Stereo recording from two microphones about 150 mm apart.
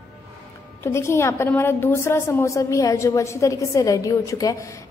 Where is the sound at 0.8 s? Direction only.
20° left (ahead or behind).